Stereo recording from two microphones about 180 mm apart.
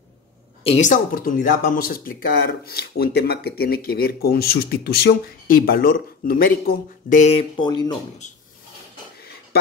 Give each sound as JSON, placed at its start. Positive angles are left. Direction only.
{"t": 0.7, "sound": "speech", "side_deg": 40}
{"t": 8.2, "sound": "drawer open or close", "side_deg": 40}